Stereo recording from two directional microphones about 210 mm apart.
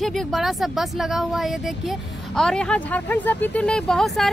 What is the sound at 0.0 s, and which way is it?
Speech, centre (ahead or behind).